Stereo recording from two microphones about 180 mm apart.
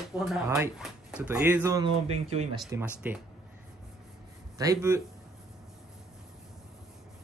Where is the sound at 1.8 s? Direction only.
35° right (ahead or behind).